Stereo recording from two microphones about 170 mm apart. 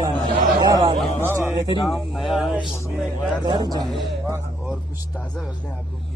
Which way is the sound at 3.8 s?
Centre (ahead or behind).